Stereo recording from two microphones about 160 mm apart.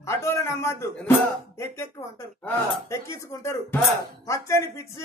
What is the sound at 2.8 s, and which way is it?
Speech, 15° left (ahead or behind).